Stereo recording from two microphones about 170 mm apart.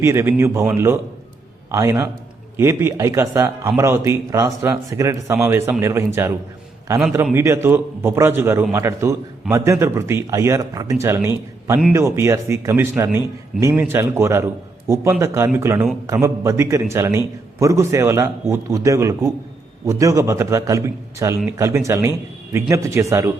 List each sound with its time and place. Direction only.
0.0 s a man's voice: 15° right (ahead or behind)